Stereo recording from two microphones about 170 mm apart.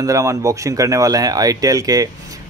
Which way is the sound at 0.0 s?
20° right (ahead or behind).